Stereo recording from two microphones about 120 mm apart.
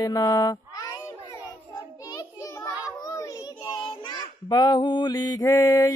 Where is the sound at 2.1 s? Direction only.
35° left (ahead or behind).